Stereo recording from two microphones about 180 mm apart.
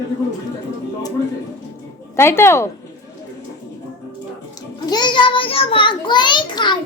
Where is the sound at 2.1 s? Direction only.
15° left (ahead or behind).